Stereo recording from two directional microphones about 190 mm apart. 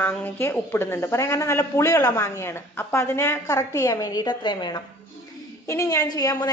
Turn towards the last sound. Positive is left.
turn(degrees=20)  # may be behind; listen again after turning